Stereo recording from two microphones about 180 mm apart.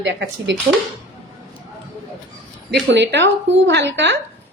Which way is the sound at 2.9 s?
75° right (ahead or behind).